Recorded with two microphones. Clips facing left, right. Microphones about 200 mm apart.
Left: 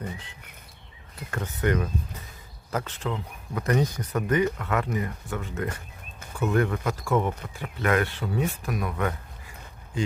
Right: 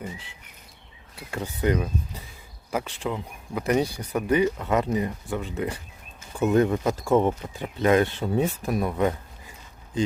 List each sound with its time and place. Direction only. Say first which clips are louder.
1.1 s speech: right 1 dB; 10° right (ahead or behind)